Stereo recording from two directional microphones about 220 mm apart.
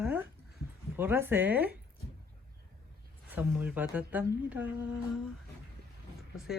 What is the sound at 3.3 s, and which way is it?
Speech, 5° right (ahead or behind).